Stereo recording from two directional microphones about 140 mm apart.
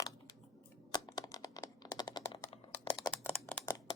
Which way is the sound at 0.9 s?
25° left (ahead or behind).